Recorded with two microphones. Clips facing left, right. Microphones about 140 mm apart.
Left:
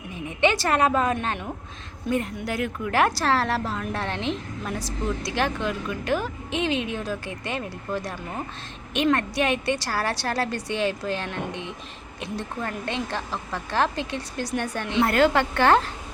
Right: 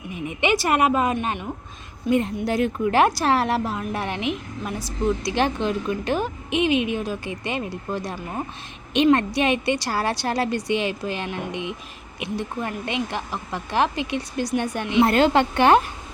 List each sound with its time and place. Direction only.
0.3 s a woman's voice: 15° right (ahead or behind)
2.0 s a woman's voice: 25° right (ahead or behind)